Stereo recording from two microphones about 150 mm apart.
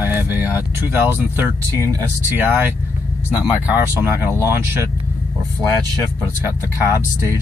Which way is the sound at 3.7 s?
15° right (ahead or behind).